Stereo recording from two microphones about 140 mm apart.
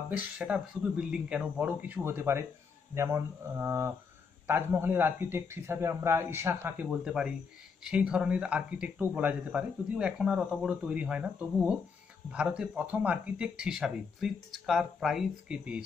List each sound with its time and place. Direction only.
0.1 s speech: 5° right (ahead or behind)
6.9 s speech: 5° right (ahead or behind)